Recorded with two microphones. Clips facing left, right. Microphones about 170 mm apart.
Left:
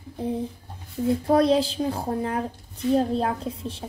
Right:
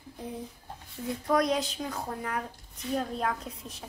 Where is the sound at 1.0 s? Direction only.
30° left (ahead or behind).